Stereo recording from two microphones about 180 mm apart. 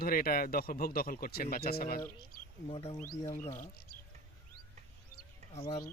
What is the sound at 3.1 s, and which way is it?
Speech, 15° left (ahead or behind).